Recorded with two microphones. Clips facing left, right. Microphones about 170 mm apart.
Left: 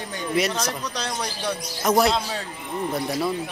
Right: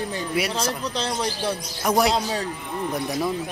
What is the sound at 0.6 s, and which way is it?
Speech, 30° right (ahead or behind).